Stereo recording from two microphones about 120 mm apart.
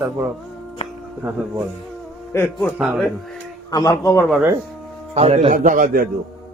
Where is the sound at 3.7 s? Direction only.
30° left (ahead or behind).